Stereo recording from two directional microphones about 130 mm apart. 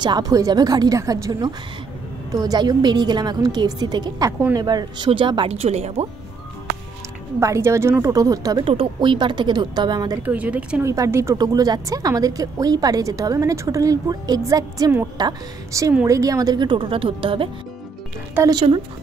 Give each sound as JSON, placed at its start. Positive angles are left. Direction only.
{"t": 0.0, "sound": "a woman's voice", "side_deg": -30}
{"t": 7.3, "sound": "a woman's voice", "side_deg": -20}
{"t": 8.6, "sound": "a woman's voice", "side_deg": -40}
{"t": 10.2, "sound": "speech", "side_deg": -10}
{"t": 10.8, "sound": "a woman's voice", "side_deg": -20}
{"t": 18.5, "sound": "a woman's voice", "side_deg": -35}